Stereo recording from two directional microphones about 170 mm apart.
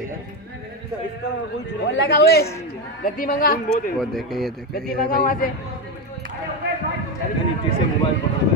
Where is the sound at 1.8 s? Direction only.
90° left.